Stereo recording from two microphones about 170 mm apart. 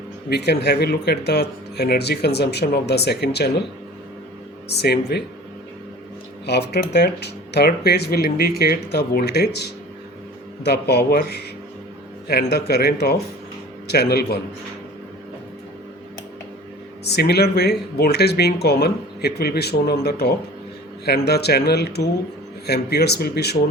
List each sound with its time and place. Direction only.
0.3 s speech: 75° left (ahead or behind)
4.7 s speech: 75° left (ahead or behind)
6.4 s speech: 75° left (ahead or behind)
17.0 s speech: 75° left (ahead or behind)